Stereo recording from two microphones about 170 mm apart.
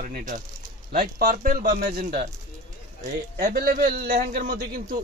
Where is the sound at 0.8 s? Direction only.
60° right (ahead or behind).